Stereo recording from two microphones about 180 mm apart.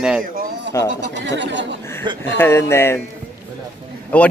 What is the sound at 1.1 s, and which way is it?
Speech, 80° right.